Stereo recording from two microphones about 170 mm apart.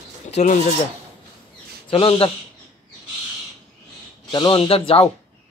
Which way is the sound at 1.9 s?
30° left (ahead or behind).